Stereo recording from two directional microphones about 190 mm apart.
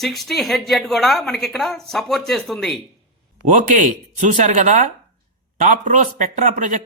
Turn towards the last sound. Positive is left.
turn(degrees=-40)  # may be behind; listen again after turning